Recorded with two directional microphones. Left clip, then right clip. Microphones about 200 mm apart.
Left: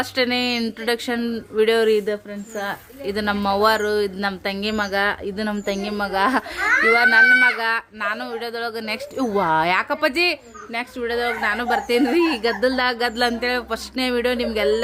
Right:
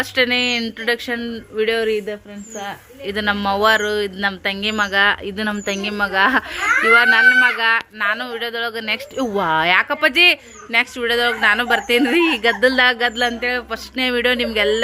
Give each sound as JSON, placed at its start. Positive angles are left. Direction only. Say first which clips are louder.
{"t": 0.0, "sound": "a man's voice", "louder": "right 4 dB", "side_deg": 10}
{"t": 3.1, "sound": "a man's voice", "louder": "right 2 dB", "side_deg": 10}